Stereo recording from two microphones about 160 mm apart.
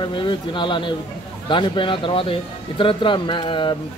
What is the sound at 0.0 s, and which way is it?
A man's voice, 30° left (ahead or behind).